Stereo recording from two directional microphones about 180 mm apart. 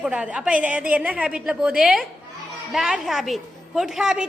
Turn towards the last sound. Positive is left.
turn(degrees=-5)  # may be behind; listen again after turning